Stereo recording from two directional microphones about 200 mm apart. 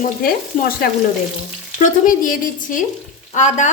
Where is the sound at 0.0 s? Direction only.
45° left (ahead or behind).